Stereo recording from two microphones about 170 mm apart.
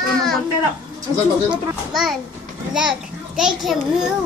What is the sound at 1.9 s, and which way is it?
Speech, centre (ahead or behind).